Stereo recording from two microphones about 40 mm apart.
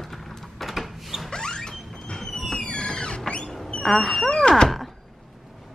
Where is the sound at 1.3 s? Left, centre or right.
Centre.